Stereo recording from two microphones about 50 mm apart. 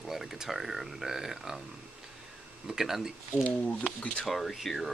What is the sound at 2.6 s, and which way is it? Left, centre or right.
Speech, centre.